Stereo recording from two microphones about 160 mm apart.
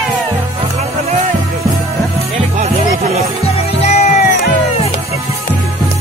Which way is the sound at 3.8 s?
45° left (ahead or behind).